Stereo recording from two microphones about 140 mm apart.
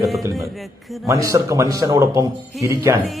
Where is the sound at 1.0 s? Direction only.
20° right (ahead or behind).